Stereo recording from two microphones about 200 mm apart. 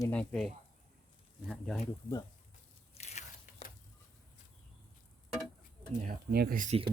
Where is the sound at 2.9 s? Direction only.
35° left (ahead or behind).